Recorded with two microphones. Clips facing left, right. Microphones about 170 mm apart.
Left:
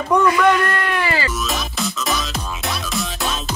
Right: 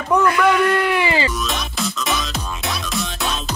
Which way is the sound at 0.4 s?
5° right (ahead or behind).